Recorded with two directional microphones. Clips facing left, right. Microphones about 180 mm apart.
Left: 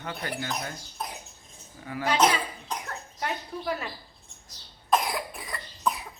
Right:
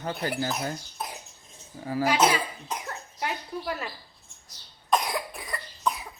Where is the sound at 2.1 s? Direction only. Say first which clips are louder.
Left 1 dB; 10° right (ahead or behind).